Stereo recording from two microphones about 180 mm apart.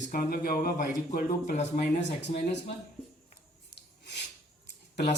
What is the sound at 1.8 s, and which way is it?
Speech, 70° left (ahead or behind).